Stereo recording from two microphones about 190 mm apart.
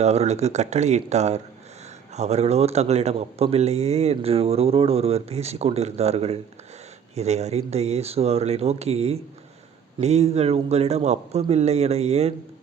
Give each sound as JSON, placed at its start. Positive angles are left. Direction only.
{"t": 0.0, "sound": "speech", "side_deg": -35}